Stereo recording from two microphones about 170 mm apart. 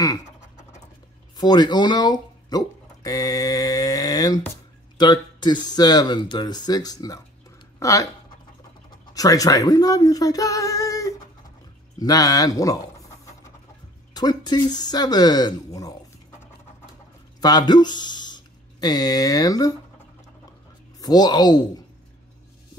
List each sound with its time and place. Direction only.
1.3 s speech: 25° left (ahead or behind)
9.1 s speech: 20° left (ahead or behind)
17.4 s speech: 25° left (ahead or behind)
21.0 s speech: 25° left (ahead or behind)